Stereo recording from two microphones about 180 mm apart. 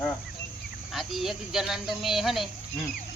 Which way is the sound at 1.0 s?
Centre (ahead or behind).